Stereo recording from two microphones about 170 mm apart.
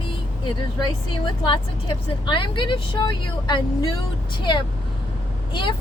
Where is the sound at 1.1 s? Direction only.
25° left (ahead or behind).